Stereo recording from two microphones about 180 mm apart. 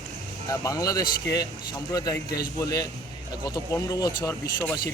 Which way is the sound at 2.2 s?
60° left (ahead or behind).